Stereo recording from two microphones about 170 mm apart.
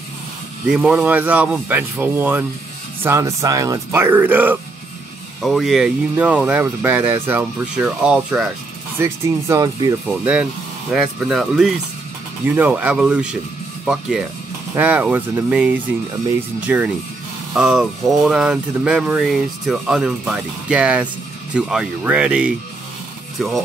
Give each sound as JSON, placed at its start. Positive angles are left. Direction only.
{"t": 0.7, "sound": "speech", "side_deg": -5}
{"t": 8.9, "sound": "speech", "side_deg": -15}
{"t": 10.9, "sound": "speech", "side_deg": -5}